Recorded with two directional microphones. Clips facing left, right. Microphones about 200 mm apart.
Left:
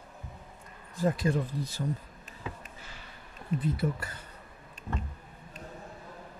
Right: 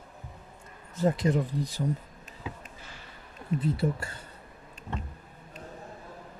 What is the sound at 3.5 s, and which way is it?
Speech, 30° right (ahead or behind).